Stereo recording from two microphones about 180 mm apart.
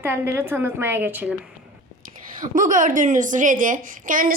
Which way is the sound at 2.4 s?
45° right (ahead or behind).